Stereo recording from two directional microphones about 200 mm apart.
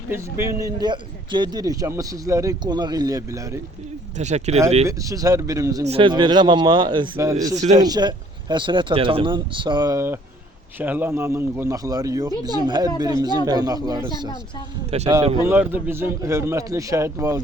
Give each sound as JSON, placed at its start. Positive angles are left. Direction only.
{"t": 0.1, "sound": "a man's voice", "side_deg": -15}
{"t": 4.2, "sound": "speech", "side_deg": -35}
{"t": 4.9, "sound": "a man's voice", "side_deg": -15}
{"t": 5.8, "sound": "speech", "side_deg": -30}
{"t": 7.5, "sound": "speech", "side_deg": -35}
{"t": 7.8, "sound": "a man's voice", "side_deg": -20}
{"t": 14.8, "sound": "speech", "side_deg": -35}
{"t": 15.4, "sound": "a man's voice", "side_deg": -10}